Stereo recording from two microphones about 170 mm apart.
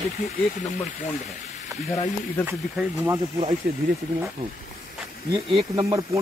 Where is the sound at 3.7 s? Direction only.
60° right (ahead or behind).